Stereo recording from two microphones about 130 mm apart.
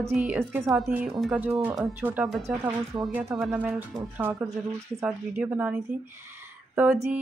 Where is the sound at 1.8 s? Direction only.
15° right (ahead or behind).